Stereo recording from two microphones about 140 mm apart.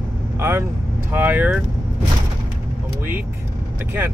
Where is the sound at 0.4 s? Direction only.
20° right (ahead or behind).